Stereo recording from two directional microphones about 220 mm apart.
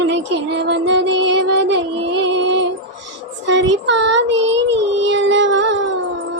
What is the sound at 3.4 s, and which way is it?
Child singing, 55° right (ahead or behind).